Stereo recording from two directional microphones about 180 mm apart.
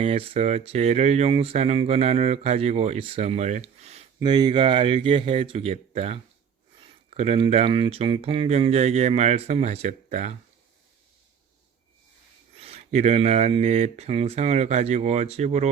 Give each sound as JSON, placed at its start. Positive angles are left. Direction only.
{"t": 0.0, "sound": "speech", "side_deg": -30}
{"t": 4.2, "sound": "speech", "side_deg": -25}
{"t": 12.5, "sound": "speech", "side_deg": -35}